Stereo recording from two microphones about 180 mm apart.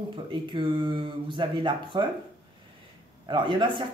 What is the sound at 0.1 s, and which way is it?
Speech, 30° right (ahead or behind).